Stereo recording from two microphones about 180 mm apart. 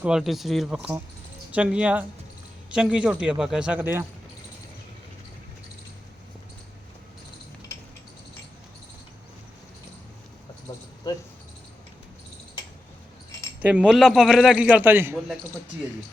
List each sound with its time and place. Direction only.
0.0 s a man's voice: centre (ahead or behind)
10.7 s a sound: 15° left (ahead or behind)
13.6 s a man's voice: 5° right (ahead or behind)